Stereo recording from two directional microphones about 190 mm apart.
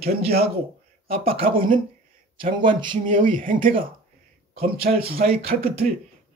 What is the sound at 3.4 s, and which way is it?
Speech, 45° right (ahead or behind).